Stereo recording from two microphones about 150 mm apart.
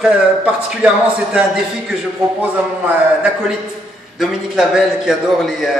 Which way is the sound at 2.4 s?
10° right (ahead or behind).